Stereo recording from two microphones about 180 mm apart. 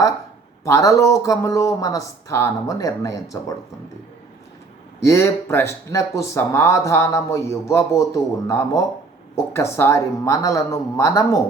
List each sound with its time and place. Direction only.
0.6 s speech: 15° left (ahead or behind)
5.0 s speech: 15° left (ahead or behind)